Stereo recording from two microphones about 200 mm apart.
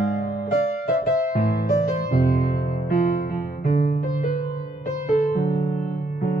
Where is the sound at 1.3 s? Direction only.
45° left (ahead or behind).